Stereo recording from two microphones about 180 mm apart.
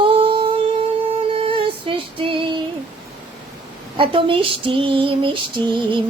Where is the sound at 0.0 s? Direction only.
30° right (ahead or behind).